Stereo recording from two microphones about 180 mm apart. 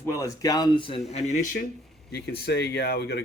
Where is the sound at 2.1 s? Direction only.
60° left (ahead or behind).